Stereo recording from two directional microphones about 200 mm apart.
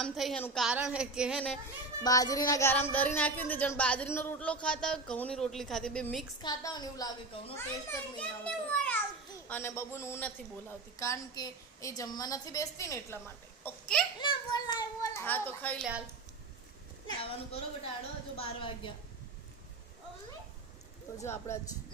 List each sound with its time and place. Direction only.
0.0 s a woman's voice: centre (ahead or behind)
2.0 s a man's voice: 15° left (ahead or behind)
6.4 s a man's voice: 20° left (ahead or behind)
14.2 s a man's voice: 20° left (ahead or behind)
17.1 s a woman's voice: 30° left (ahead or behind)
21.2 s a man's voice: 15° left (ahead or behind)